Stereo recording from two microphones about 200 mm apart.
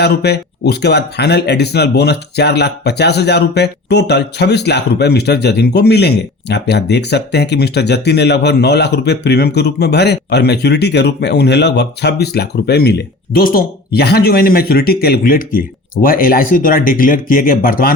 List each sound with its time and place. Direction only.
0.0 s speech: 55° left (ahead or behind)